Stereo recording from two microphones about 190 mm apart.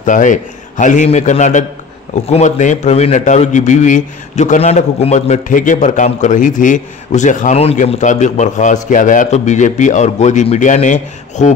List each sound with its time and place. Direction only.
0.0 s a man's voice: 40° left (ahead or behind)